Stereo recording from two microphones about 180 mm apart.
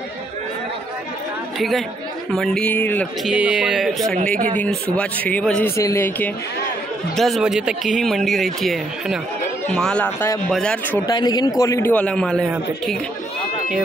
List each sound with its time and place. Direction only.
1.6 s a man's voice: centre (ahead or behind)
3.3 s a man's voice: 5° right (ahead or behind)
7.2 s a man's voice: centre (ahead or behind)
11.1 s a man's voice: 20° left (ahead or behind)
11.9 s speech: 5° left (ahead or behind)